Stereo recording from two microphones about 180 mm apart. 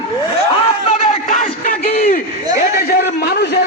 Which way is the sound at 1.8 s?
35° left (ahead or behind).